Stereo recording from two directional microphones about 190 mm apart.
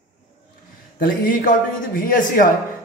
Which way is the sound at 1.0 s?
45° left (ahead or behind).